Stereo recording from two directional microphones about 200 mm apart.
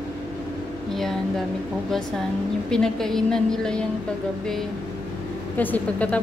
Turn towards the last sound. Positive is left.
turn(degrees=10)  # may be behind; listen again after turning